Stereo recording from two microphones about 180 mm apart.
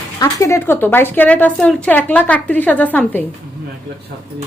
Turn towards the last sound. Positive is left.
turn(degrees=10)  # may be behind; listen again after turning